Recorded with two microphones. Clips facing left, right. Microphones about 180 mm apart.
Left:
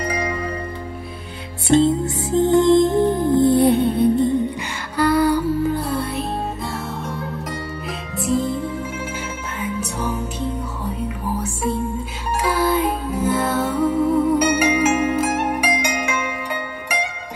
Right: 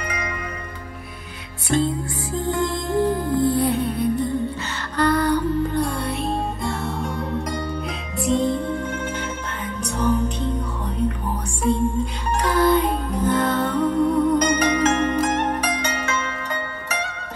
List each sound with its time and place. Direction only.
0.1 s music: 30° left (ahead or behind)
1.7 s music: 25° left (ahead or behind)
4.9 s music: 10° left (ahead or behind)
16.9 s zither: 15° left (ahead or behind)